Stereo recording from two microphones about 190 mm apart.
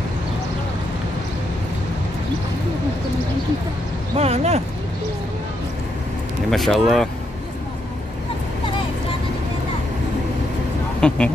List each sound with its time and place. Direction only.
4.2 s speech: 35° right (ahead or behind)
6.5 s speech: centre (ahead or behind)
11.0 s speech: 5° left (ahead or behind)